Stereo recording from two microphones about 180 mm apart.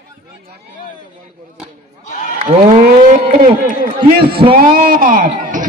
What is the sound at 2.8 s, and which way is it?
A man's voice, 55° right (ahead or behind).